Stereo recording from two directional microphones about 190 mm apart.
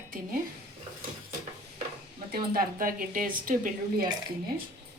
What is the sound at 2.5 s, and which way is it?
Speech, 50° right (ahead or behind).